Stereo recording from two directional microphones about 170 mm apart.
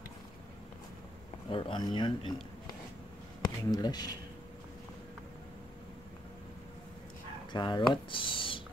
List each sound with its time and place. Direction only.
1.5 s a man's voice: 30° left (ahead or behind)
7.5 s speech: 25° left (ahead or behind)